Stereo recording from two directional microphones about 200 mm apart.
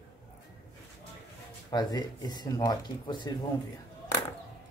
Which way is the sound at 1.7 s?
20° left (ahead or behind).